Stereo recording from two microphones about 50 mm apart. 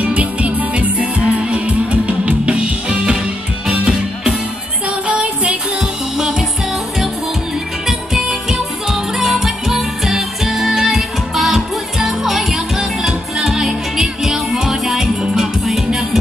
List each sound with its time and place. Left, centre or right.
0.0 s music: right
6.1 s music: centre
7.8 s music: centre